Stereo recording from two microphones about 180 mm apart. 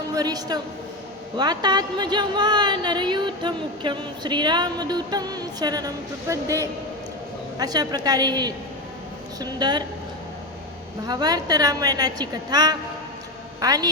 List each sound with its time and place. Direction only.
0.2 s speech: 20° right (ahead or behind)
11.0 s speech: 20° right (ahead or behind)